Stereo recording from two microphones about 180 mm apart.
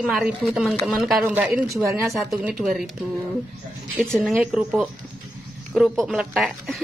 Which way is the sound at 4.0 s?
5° left (ahead or behind).